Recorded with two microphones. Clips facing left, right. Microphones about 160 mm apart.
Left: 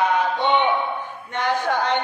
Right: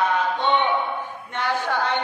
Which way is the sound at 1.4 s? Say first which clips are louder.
Left 2 dB; 15° left (ahead or behind).